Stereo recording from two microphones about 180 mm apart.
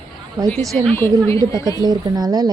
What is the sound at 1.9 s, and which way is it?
Speech, 20° right (ahead or behind).